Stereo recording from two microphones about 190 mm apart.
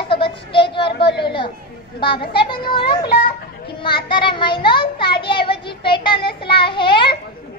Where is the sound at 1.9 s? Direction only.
25° left (ahead or behind).